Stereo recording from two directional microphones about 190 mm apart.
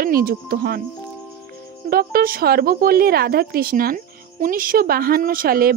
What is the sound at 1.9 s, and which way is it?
A woman's voice, 50° right (ahead or behind).